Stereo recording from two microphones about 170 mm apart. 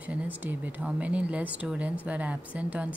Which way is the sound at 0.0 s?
10° right (ahead or behind).